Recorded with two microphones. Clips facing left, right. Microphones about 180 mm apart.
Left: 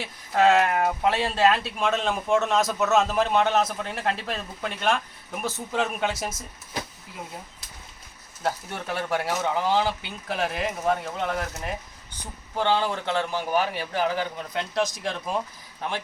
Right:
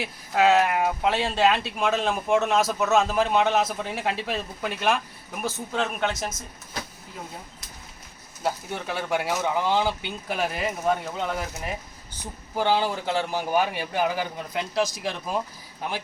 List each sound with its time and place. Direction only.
0.0 s speech: 5° right (ahead or behind)
8.4 s speech: centre (ahead or behind)